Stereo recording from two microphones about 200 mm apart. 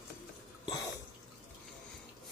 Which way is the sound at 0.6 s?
20° left (ahead or behind).